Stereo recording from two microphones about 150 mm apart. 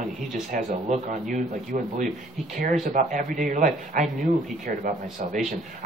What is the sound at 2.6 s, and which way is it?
Speech, 60° right (ahead or behind).